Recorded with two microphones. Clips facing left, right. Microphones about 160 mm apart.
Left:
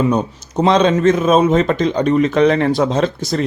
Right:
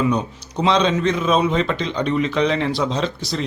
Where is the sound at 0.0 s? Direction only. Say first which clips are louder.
Left 4 dB; 45° left (ahead or behind).